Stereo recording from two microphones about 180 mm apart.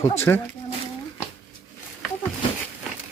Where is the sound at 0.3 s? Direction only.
15° left (ahead or behind).